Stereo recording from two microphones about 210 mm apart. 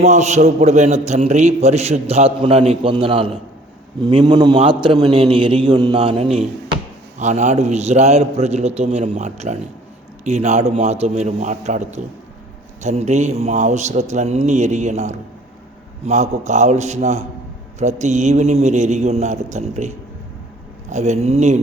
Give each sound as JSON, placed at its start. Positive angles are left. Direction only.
{"t": 0.0, "sound": "a man's voice", "side_deg": -35}
{"t": 20.9, "sound": "a man's voice", "side_deg": -35}